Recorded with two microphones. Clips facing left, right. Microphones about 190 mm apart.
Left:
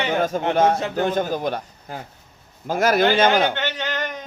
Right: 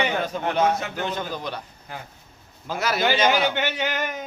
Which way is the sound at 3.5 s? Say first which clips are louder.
Right 1 dB; 10° right (ahead or behind).